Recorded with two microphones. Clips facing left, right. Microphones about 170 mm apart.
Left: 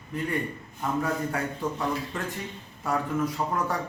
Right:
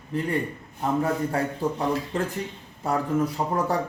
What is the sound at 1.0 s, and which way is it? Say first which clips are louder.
Speech: right 4 dB; 30° right (ahead or behind).